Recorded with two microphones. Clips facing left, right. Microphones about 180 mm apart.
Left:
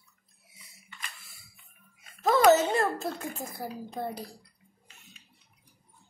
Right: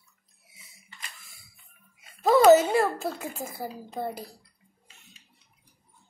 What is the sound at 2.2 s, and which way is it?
A child's voice, 10° right (ahead or behind).